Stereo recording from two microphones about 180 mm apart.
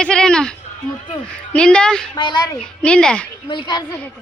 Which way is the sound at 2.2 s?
25° left (ahead or behind).